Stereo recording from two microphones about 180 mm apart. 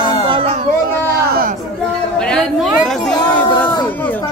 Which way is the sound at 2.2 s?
5° left (ahead or behind).